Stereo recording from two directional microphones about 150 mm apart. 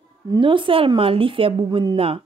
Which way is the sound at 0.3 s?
35° right (ahead or behind).